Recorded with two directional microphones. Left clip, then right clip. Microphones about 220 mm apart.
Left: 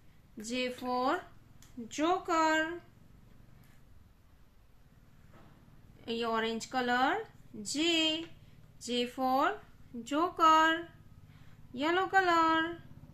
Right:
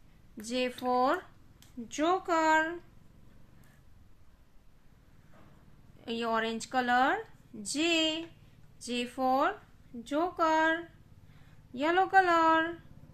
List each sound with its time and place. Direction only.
0.4 s speech: 15° right (ahead or behind)
5.9 s a woman's voice: 15° right (ahead or behind)